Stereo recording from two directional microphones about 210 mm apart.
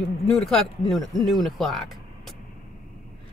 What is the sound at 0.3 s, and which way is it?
Speech, centre (ahead or behind).